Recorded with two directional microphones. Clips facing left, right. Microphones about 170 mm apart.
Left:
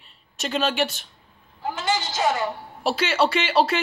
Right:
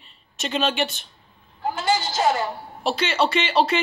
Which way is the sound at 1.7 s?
35° right (ahead or behind).